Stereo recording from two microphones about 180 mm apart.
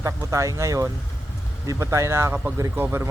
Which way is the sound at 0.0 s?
15° right (ahead or behind).